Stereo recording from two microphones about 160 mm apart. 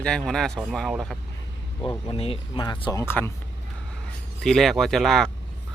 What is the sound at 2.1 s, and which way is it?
Speech, 35° left (ahead or behind).